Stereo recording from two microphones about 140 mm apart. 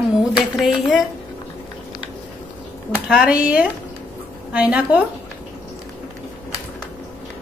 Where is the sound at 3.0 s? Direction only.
5° right (ahead or behind).